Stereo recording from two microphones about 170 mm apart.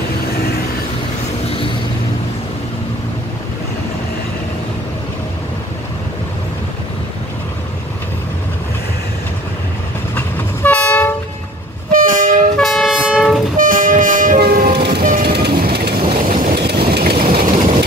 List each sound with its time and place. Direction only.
10.1 s train: 10° left (ahead or behind)
11.9 s train: 55° right (ahead or behind)
12.5 s train: centre (ahead or behind)
13.6 s train: 55° right (ahead or behind); by 15.0 s 70° right (ahead or behind)
15.0 s vehicle: 60° right (ahead or behind)